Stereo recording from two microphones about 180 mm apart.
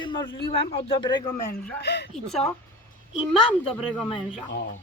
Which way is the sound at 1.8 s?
70° left (ahead or behind).